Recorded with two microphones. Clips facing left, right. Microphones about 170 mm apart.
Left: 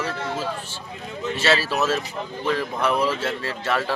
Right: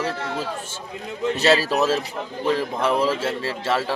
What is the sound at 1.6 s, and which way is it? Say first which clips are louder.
A man's voice: right 2 dB; 40° right (ahead or behind).